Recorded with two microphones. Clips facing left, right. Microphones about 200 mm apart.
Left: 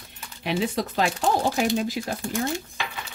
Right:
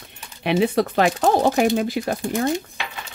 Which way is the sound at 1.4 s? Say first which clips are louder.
Right 5 dB; 60° right (ahead or behind).